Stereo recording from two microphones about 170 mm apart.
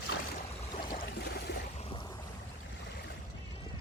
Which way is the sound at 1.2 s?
75° left (ahead or behind).